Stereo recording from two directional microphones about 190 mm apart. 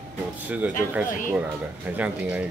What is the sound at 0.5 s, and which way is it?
Speech, 10° right (ahead or behind).